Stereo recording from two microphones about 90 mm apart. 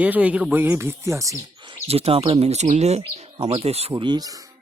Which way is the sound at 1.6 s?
80° right.